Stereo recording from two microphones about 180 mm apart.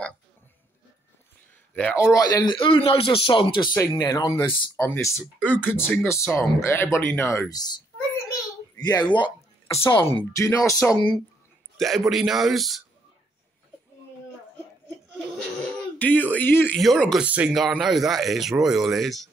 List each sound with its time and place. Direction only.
1.7 s a man's voice: 10° left (ahead or behind)
2.1 s speech: 20° left (ahead or behind)
3.7 s speech: 15° left (ahead or behind)
8.3 s a sound: 20° left (ahead or behind)
10.1 s speech: 15° left (ahead or behind)
11.7 s a sound: centre (ahead or behind)
12.1 s speech: centre (ahead or behind)
16.0 s speech: 10° left (ahead or behind)